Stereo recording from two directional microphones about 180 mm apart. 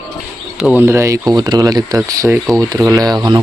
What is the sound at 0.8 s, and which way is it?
Speech, 15° right (ahead or behind).